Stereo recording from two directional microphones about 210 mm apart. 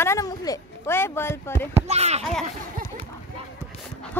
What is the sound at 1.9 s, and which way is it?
Speech, 30° right (ahead or behind).